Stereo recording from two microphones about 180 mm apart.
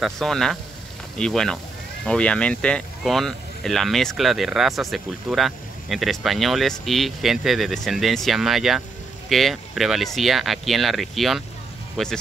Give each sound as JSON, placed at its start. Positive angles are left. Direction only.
{"t": 0.0, "sound": "speech", "side_deg": 0}